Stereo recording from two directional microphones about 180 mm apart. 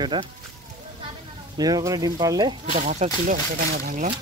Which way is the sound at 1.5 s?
20° right (ahead or behind).